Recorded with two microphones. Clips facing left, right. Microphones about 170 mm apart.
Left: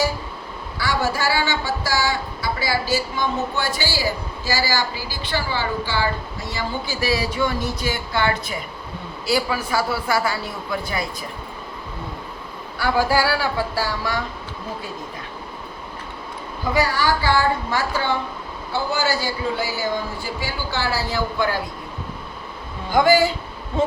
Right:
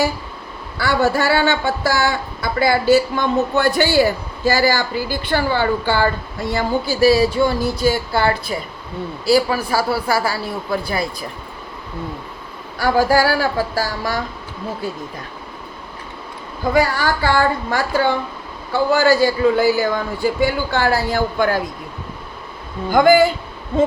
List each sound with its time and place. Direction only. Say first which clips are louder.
0.8 s speech: right 6 dB; 55° right (ahead or behind)
6.8 s speech: right 11 dB; 35° right (ahead or behind)
12.8 s speech: right 4 dB; 45° right (ahead or behind)
16.7 s speech: right 3 dB; 50° right (ahead or behind)
22.9 s speech: right 4 dB; 55° right (ahead or behind)